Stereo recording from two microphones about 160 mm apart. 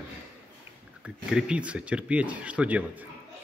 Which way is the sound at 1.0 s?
5° right (ahead or behind).